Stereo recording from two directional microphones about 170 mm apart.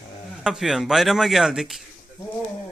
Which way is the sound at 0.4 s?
5° right (ahead or behind).